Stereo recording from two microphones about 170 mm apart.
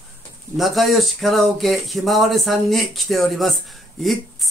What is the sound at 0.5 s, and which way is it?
Speech, centre (ahead or behind).